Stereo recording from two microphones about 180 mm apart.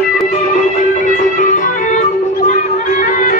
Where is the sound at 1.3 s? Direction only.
45° left (ahead or behind).